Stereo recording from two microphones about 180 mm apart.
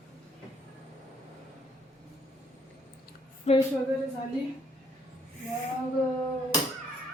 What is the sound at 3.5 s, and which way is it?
Speech, 40° left (ahead or behind).